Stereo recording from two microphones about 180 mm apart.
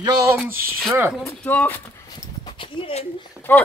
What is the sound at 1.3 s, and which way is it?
Speech, 10° left (ahead or behind).